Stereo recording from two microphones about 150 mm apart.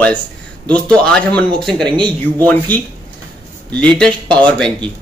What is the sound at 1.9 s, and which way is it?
Speech, 30° right (ahead or behind).